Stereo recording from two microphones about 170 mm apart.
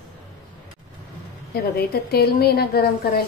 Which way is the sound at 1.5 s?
65° left (ahead or behind).